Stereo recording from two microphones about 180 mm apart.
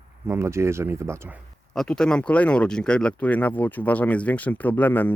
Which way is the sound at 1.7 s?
5° left (ahead or behind).